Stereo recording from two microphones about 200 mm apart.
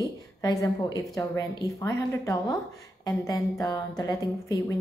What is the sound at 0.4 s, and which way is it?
A woman's voice, 20° left (ahead or behind).